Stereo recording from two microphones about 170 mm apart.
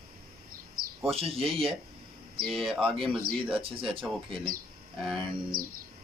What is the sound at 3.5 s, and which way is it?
Speech, 30° right (ahead or behind).